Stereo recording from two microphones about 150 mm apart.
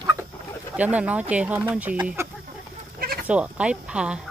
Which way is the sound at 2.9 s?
85° right.